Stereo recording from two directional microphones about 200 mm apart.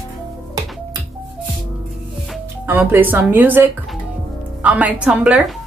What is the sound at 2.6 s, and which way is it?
A woman's voice, 10° right (ahead or behind).